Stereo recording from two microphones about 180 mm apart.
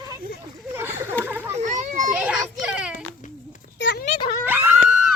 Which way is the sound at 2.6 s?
5° right (ahead or behind).